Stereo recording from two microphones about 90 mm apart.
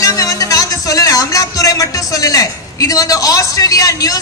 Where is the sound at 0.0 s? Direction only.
40° left (ahead or behind).